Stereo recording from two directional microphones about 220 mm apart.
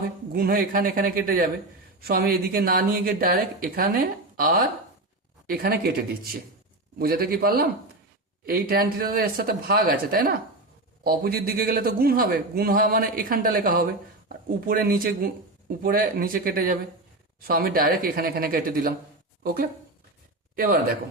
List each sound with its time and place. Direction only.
0.3 s a man's voice: 40° right (ahead or behind)